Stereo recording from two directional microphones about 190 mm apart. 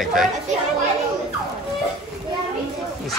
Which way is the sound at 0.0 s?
Centre (ahead or behind).